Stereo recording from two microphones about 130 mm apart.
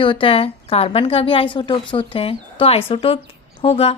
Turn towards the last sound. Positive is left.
turn(degrees=45)  # may be behind; listen again after turning